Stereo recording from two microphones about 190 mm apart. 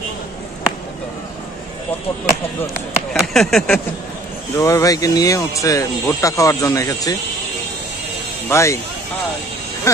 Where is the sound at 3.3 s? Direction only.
Centre (ahead or behind).